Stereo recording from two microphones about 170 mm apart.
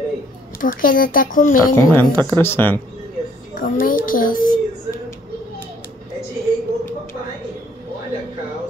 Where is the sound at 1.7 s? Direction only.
15° left (ahead or behind).